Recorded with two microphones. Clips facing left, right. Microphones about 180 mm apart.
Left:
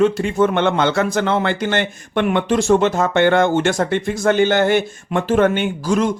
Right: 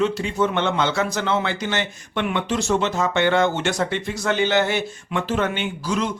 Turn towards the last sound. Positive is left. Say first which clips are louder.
# left 6 dB
turn(degrees=50)  # may be behind; listen again after turning